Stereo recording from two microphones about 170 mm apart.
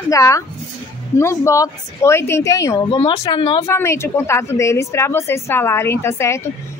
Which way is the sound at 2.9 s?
35° left (ahead or behind).